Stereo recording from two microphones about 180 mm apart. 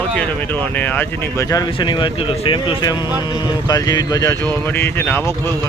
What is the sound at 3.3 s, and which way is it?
Speech, 25° left (ahead or behind).